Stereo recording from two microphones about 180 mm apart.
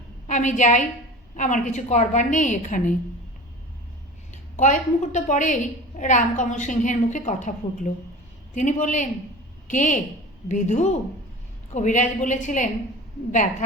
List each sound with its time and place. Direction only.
0.3 s a woman's voice: 45° left (ahead or behind)
4.5 s a woman's voice: 40° left (ahead or behind)